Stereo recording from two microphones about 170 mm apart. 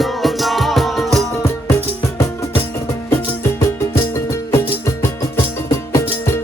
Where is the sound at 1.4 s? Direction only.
15° left (ahead or behind).